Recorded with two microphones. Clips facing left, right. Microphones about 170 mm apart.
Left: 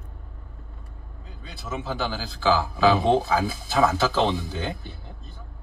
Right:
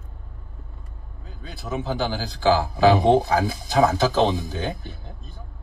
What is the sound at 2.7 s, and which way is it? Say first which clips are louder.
Speech: right 4 dB; 40° right (ahead or behind).